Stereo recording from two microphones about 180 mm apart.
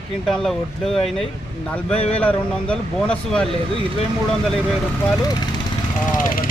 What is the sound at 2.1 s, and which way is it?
Speech, 5° left (ahead or behind).